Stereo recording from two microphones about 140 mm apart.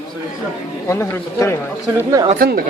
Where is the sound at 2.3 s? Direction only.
90° right.